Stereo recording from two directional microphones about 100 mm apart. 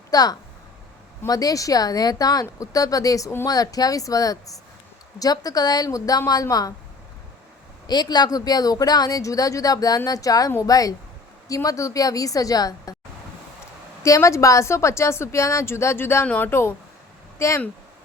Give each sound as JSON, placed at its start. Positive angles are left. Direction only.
{"t": 0.1, "sound": "speech", "side_deg": 40}
{"t": 7.9, "sound": "speech", "side_deg": 45}
{"t": 14.0, "sound": "a woman's voice", "side_deg": 30}